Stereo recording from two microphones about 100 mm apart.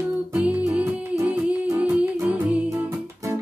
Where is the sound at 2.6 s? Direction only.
25° right (ahead or behind).